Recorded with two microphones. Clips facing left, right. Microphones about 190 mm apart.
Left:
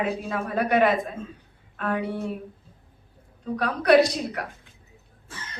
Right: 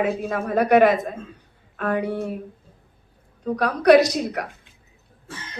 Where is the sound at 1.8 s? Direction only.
45° right (ahead or behind).